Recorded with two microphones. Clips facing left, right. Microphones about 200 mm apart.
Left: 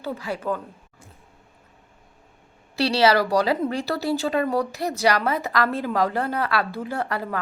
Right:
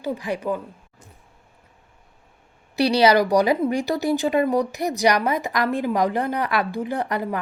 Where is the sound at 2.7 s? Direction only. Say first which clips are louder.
Right 2 dB; 20° right (ahead or behind).